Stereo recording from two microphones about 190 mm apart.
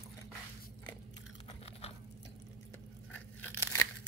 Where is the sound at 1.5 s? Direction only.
30° left (ahead or behind).